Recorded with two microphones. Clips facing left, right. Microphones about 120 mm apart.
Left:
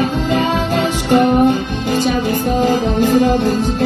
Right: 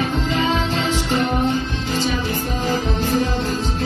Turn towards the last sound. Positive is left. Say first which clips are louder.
# left 8 dB
turn(degrees=50)  # may be behind; listen again after turning